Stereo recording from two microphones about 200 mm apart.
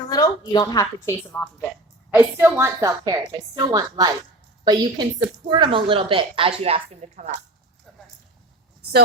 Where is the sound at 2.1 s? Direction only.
10° right (ahead or behind); by 7.3 s 30° right (ahead or behind).